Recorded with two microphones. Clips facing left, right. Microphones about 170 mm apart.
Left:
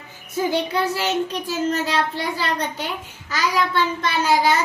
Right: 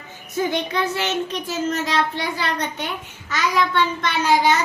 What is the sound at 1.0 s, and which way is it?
Child singing, 35° left (ahead or behind).